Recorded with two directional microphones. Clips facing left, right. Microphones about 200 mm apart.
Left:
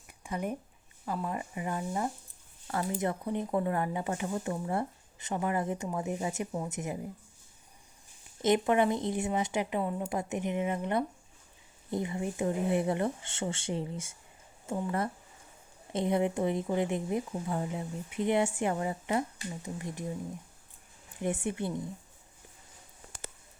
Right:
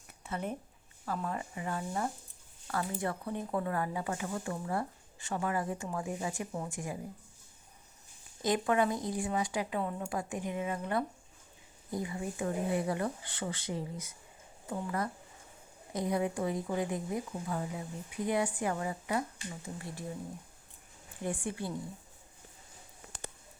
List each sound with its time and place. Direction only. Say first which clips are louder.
0.2 s a sound: left 3 dB; 15° left (ahead or behind)
1.0 s speech: left 2 dB; 15° left (ahead or behind)
8.4 s speech: left 3 dB; 20° left (ahead or behind)
21.2 s speech: left 4 dB; 20° left (ahead or behind)